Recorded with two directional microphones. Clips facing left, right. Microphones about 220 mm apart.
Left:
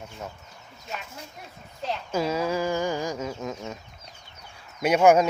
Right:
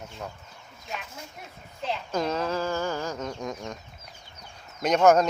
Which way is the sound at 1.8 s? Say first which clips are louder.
Left 1 dB; 5° left (ahead or behind).